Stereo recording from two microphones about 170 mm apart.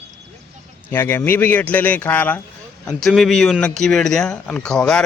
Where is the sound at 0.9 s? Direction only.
15° left (ahead or behind).